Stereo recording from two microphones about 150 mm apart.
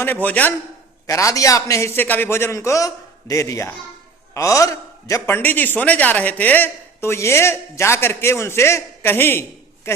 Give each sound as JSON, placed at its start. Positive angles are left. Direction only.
{"t": 0.0, "sound": "a man's voice", "side_deg": 10}
{"t": 1.0, "sound": "a man's voice", "side_deg": 20}